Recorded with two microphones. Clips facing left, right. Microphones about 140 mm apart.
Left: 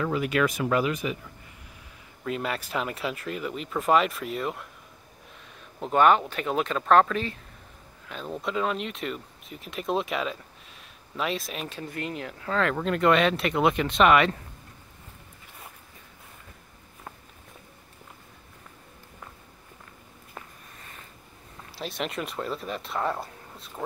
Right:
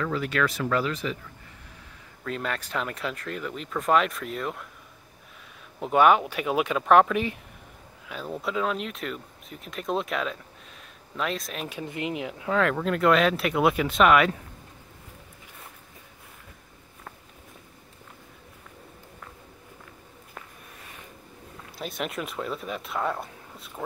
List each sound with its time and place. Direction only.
0.0 s speech: 15° left (ahead or behind)
2.2 s speech: 5° left (ahead or behind)
5.8 s speech: 10° right (ahead or behind)
11.7 s speech: 15° right (ahead or behind)
21.7 s speech: centre (ahead or behind)